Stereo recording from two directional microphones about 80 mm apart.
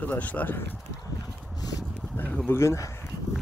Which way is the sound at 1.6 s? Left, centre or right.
Left.